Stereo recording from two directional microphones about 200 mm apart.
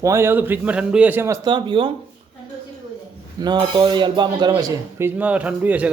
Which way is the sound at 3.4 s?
20° right (ahead or behind).